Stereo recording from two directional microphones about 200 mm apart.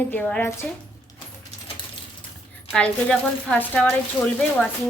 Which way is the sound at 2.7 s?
5° left (ahead or behind).